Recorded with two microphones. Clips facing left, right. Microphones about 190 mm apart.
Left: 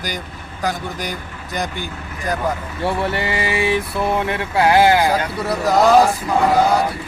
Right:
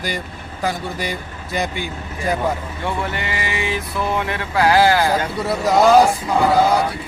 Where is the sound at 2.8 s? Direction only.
30° left (ahead or behind).